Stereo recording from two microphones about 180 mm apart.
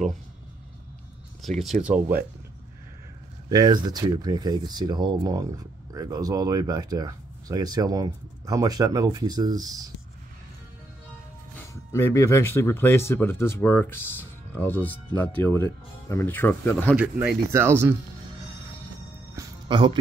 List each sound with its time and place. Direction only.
1.6 s speech: 5° right (ahead or behind)
3.4 s speech: 20° right (ahead or behind)
11.5 s speech: 15° left (ahead or behind)
16.9 s speech: 5° right (ahead or behind)
19.3 s music: 25° right (ahead or behind)